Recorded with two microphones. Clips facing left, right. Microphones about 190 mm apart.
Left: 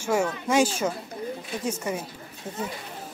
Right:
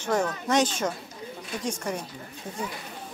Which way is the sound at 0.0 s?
10° left (ahead or behind).